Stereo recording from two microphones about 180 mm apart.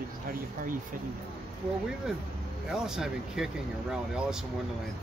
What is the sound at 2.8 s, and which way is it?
Speech, 5° right (ahead or behind).